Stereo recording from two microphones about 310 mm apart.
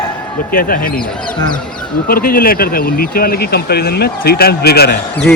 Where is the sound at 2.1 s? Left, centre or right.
Left.